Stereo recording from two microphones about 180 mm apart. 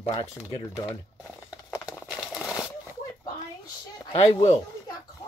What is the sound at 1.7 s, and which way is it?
Crumpling, 5° right (ahead or behind).